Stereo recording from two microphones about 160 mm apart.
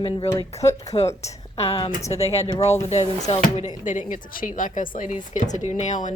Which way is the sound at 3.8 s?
50° left (ahead or behind).